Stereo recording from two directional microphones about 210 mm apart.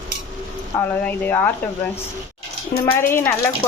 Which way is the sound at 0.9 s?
10° left (ahead or behind).